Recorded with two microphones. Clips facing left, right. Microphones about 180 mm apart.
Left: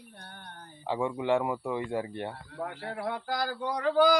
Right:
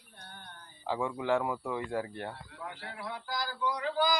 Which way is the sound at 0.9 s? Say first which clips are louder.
Left 3 dB; 10° left (ahead or behind).